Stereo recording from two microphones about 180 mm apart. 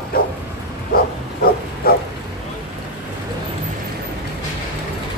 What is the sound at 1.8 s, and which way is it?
Bow-wow, 55° left (ahead or behind).